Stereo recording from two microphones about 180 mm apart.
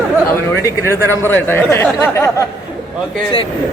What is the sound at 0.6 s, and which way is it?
Speech, 15° left (ahead or behind).